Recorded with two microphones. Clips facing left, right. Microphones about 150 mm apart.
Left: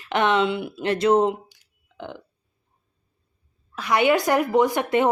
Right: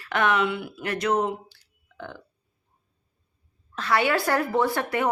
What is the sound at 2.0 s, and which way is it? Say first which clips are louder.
Burping: left 3 dB; 20° left (ahead or behind).